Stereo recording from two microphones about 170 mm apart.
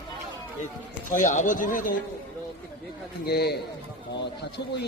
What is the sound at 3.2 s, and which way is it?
Speech, 70° left (ahead or behind).